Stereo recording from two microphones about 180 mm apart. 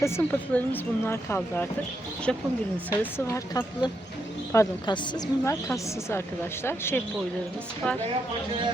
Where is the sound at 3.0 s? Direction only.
15° left (ahead or behind).